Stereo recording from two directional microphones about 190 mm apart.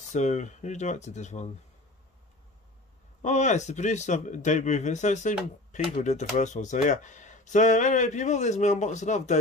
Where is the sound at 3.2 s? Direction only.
40° left (ahead or behind).